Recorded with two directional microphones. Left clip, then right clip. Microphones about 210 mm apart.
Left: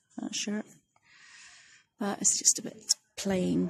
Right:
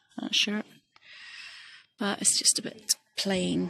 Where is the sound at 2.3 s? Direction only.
10° left (ahead or behind).